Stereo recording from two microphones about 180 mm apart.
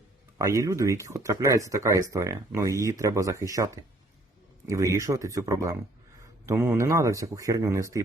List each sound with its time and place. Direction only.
0.3 s speech: 20° right (ahead or behind)